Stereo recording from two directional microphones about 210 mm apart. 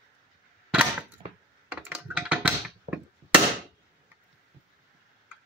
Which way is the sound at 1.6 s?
5° right (ahead or behind).